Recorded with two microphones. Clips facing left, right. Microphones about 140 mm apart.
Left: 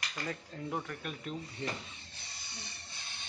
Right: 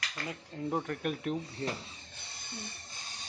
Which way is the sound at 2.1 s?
55° right (ahead or behind).